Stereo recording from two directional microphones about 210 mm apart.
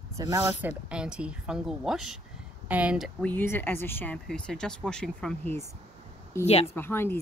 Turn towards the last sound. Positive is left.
turn(degrees=10)  # may be behind; listen again after turning